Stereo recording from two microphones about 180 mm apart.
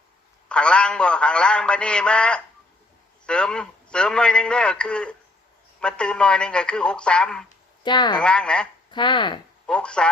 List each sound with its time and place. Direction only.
0.4 s a man's voice: 5° left (ahead or behind)
7.9 s speech: 25° left (ahead or behind)
8.2 s a man's voice: 5° left (ahead or behind)
8.9 s speech: 25° left (ahead or behind)
9.6 s a man's voice: 5° left (ahead or behind)